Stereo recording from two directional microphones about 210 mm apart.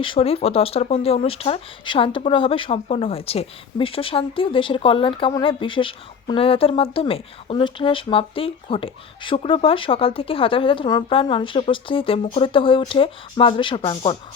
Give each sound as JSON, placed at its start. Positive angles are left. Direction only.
{"t": 0.0, "sound": "speech", "side_deg": 25}